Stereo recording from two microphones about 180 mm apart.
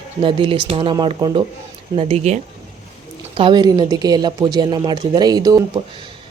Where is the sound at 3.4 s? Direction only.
25° right (ahead or behind).